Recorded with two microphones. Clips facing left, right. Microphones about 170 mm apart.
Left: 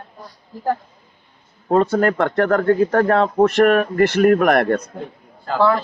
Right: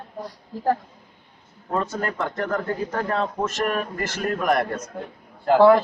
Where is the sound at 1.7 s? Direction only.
65° left (ahead or behind).